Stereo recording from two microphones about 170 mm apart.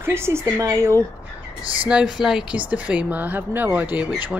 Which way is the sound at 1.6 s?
30° right (ahead or behind).